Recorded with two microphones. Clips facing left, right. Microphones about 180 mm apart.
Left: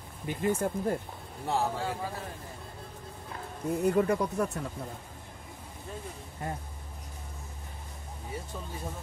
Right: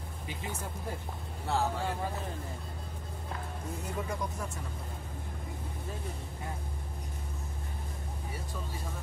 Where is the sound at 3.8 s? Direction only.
60° left (ahead or behind).